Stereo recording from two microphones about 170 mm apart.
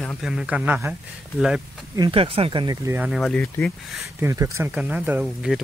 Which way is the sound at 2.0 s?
30° right (ahead or behind).